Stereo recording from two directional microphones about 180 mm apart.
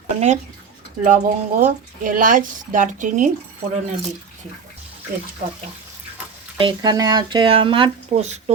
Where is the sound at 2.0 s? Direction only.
50° right (ahead or behind).